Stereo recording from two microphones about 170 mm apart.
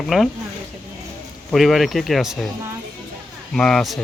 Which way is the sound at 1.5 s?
Centre (ahead or behind).